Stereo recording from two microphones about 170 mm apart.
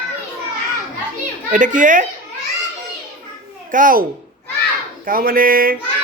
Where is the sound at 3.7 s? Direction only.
55° right (ahead or behind).